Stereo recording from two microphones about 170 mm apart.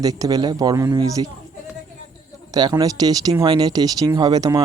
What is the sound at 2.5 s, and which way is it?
Speech, 20° right (ahead or behind).